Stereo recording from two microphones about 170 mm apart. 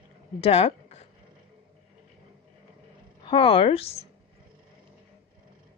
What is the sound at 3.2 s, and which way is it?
Speech, 30° left (ahead or behind).